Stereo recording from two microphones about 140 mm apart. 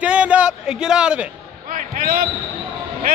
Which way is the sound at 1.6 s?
75° right (ahead or behind).